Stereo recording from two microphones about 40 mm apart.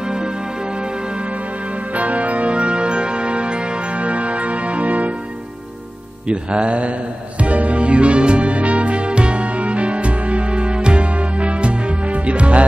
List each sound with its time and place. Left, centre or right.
2.0 s music: right
6.2 s music: right